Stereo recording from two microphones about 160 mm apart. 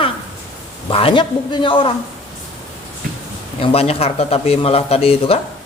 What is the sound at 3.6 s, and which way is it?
Speech, 35° left (ahead or behind).